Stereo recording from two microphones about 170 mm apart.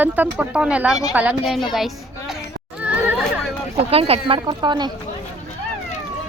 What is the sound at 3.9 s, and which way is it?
Speech, 35° right (ahead or behind).